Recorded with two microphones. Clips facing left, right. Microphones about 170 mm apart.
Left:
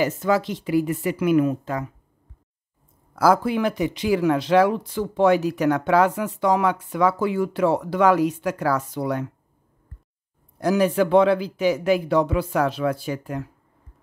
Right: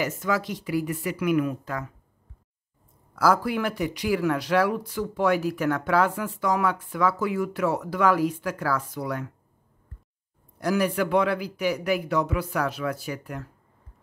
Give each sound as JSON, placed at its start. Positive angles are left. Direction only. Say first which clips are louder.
{"t": 0.0, "sound": "speech", "louder": "left 5 dB", "side_deg": 30}
{"t": 3.2, "sound": "speech", "louder": "left 4 dB", "side_deg": 20}
{"t": 10.6, "sound": "speech", "louder": "left 5 dB", "side_deg": 20}